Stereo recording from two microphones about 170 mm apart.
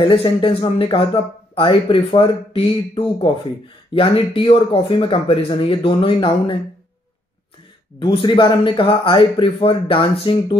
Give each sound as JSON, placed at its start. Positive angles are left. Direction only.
{"t": 0.0, "sound": "speech", "side_deg": 30}
{"t": 8.0, "sound": "speech", "side_deg": 30}